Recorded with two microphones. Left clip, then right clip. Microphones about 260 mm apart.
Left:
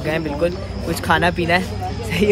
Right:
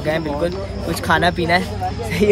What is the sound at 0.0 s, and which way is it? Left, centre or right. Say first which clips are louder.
Speech: even; centre.